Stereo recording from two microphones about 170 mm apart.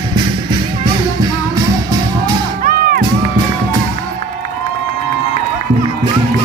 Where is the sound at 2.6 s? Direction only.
55° right (ahead or behind).